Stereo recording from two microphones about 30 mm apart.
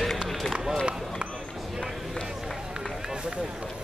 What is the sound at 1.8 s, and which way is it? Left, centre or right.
Run, centre.